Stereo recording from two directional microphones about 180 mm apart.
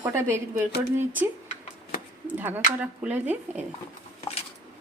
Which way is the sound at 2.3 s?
10° right (ahead or behind).